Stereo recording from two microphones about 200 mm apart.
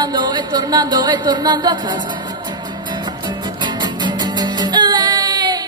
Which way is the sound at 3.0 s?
20° right (ahead or behind).